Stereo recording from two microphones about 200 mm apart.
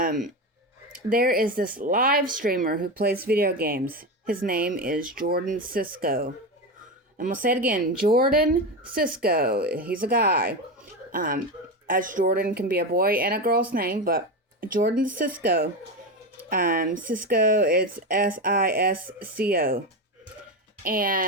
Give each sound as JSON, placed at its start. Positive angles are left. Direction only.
{"t": 1.1, "sound": "speech", "side_deg": -45}
{"t": 20.8, "sound": "speech", "side_deg": -45}